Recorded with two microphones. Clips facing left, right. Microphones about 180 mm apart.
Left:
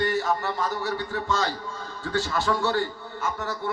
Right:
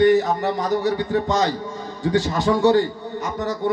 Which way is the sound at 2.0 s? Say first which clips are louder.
Right 7 dB; 15° right (ahead or behind).